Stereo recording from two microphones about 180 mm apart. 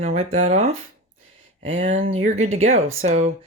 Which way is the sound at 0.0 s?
35° right (ahead or behind).